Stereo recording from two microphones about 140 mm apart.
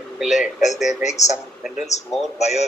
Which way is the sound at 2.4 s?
55° left (ahead or behind).